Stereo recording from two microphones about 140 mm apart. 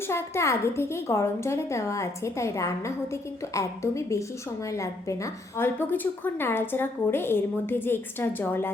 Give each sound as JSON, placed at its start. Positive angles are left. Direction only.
{"t": 0.1, "sound": "a woman's voice", "side_deg": 20}